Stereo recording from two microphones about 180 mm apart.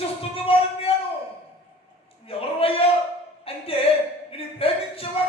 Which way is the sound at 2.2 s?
30° left (ahead or behind).